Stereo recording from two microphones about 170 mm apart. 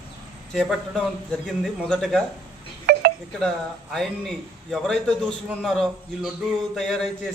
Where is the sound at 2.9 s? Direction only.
75° right (ahead or behind).